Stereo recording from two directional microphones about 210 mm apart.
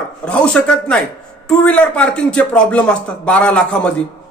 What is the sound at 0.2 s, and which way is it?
A man's voice, 5° left (ahead or behind).